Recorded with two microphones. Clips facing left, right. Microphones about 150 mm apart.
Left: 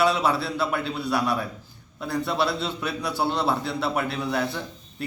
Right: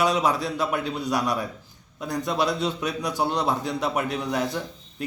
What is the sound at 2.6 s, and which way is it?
A man's voice, 15° right (ahead or behind).